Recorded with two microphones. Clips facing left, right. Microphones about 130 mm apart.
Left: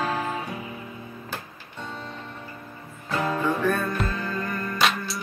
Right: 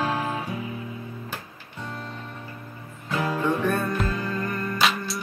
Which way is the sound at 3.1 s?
5° right (ahead or behind).